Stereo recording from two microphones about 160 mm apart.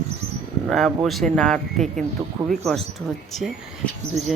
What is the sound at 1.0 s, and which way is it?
Speech, centre (ahead or behind).